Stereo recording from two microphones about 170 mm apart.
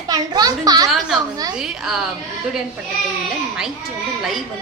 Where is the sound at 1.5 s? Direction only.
5° right (ahead or behind).